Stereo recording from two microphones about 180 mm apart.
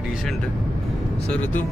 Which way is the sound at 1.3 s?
10° left (ahead or behind).